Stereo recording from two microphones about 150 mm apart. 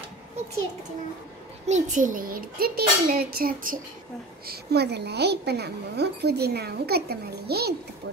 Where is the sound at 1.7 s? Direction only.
60° right (ahead or behind).